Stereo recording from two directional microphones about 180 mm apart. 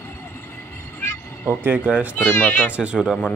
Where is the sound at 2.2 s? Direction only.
10° left (ahead or behind).